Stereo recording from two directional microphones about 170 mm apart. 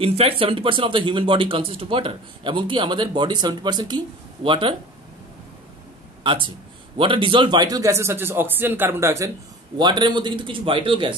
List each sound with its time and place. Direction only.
0.0 s speech: 35° right (ahead or behind)
6.2 s speech: 30° right (ahead or behind)
9.8 s speech: 25° right (ahead or behind)